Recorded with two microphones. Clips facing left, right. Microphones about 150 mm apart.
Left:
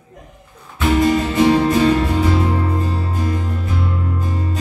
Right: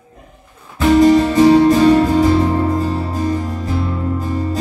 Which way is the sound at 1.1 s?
35° right (ahead or behind).